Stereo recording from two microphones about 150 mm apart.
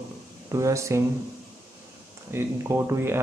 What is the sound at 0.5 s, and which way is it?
Speech, 20° right (ahead or behind).